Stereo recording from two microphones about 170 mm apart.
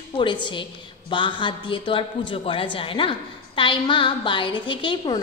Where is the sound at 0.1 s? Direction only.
30° left (ahead or behind).